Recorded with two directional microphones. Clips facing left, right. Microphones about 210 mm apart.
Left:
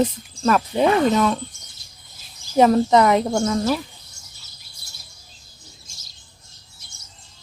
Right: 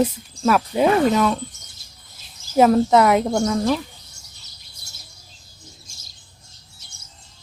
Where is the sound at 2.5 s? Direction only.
Centre (ahead or behind).